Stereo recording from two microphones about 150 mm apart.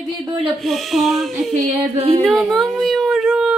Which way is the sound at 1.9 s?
40° right (ahead or behind).